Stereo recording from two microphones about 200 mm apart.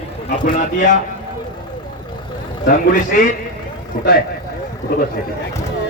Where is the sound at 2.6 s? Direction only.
45° left (ahead or behind).